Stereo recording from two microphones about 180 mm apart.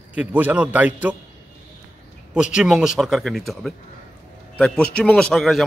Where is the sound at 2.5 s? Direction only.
5° right (ahead or behind).